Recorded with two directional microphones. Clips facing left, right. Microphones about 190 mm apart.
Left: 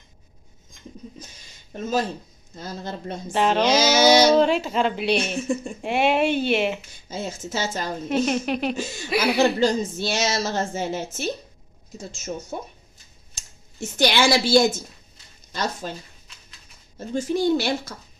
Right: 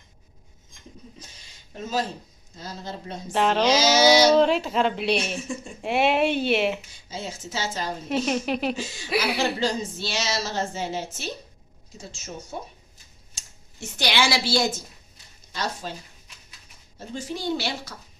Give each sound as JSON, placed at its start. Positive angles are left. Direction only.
{"t": 1.8, "sound": "a woman's voice", "side_deg": 50}
{"t": 3.3, "sound": "speech", "side_deg": 0}
{"t": 3.7, "sound": "a woman's voice", "side_deg": 55}
{"t": 4.3, "sound": "speech", "side_deg": 0}
{"t": 7.1, "sound": "a woman's voice", "side_deg": 50}
{"t": 8.1, "sound": "speech", "side_deg": 0}
{"t": 8.7, "sound": "a woman's voice", "side_deg": 50}
{"t": 13.3, "sound": "speech", "side_deg": 45}
{"t": 15.8, "sound": "a woman's voice", "side_deg": 50}
{"t": 17.2, "sound": "a woman's voice", "side_deg": 50}